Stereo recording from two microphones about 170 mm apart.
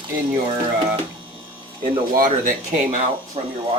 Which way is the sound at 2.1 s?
55° right (ahead or behind).